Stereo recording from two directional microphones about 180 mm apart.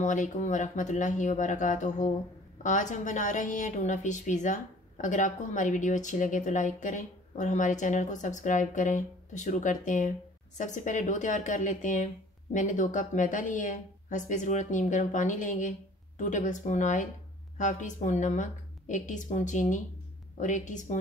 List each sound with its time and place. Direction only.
0.0 s a woman's voice: 45° left (ahead or behind)